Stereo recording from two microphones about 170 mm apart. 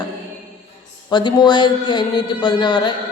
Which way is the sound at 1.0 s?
25° left (ahead or behind).